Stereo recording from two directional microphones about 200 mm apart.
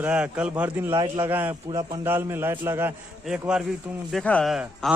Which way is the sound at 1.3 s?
10° right (ahead or behind).